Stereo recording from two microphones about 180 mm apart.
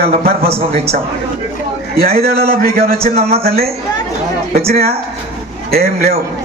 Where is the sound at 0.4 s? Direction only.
35° right (ahead or behind).